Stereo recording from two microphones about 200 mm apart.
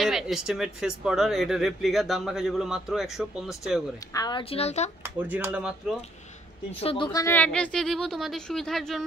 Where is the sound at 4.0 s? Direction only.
15° left (ahead or behind).